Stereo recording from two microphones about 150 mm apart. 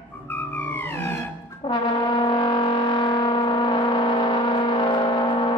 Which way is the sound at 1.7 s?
30° left (ahead or behind).